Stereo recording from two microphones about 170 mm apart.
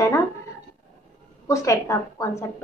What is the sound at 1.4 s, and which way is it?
A woman's voice, 20° left (ahead or behind).